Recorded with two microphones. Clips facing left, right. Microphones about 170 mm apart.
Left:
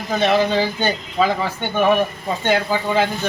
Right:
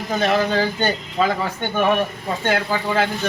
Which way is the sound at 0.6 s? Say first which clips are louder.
Even; 10° left (ahead or behind).